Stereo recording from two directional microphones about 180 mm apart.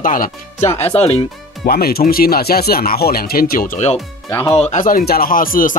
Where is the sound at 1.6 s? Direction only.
60° left (ahead or behind).